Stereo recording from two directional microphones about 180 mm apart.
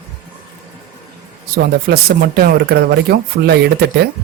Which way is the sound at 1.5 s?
60° right (ahead or behind).